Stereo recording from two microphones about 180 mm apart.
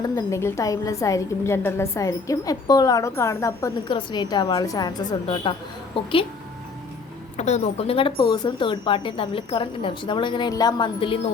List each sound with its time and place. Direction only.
0.0 s a woman's voice: 15° left (ahead or behind)
7.3 s speech: 40° left (ahead or behind)